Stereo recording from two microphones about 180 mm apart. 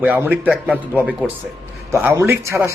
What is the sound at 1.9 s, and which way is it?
Speech, 15° right (ahead or behind).